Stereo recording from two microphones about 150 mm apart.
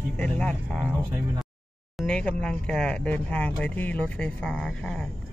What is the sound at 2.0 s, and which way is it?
Speech, 5° left (ahead or behind).